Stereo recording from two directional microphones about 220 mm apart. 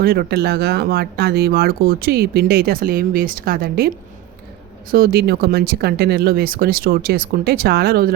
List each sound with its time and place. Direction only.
0.0 s speech: 45° right (ahead or behind)